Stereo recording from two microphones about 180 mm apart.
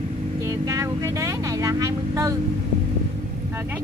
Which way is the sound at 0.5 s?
15° right (ahead or behind).